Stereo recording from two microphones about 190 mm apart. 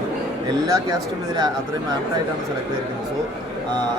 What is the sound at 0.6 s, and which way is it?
Speech, 15° right (ahead or behind).